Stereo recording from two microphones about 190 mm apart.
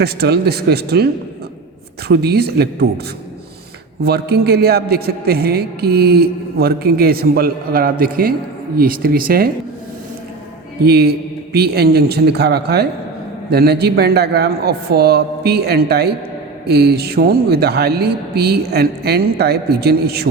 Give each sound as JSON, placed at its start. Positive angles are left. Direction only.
{"t": 0.0, "sound": "a man's voice", "side_deg": -55}
{"t": 2.0, "sound": "a man's voice", "side_deg": -55}
{"t": 4.0, "sound": "a man's voice", "side_deg": -60}
{"t": 10.8, "sound": "a man's voice", "side_deg": -55}